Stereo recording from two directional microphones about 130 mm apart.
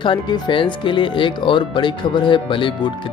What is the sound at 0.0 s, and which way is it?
Speech, 40° left (ahead or behind).